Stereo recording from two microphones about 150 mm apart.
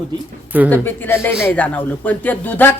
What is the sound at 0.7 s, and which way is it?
A man's voice, 15° left (ahead or behind).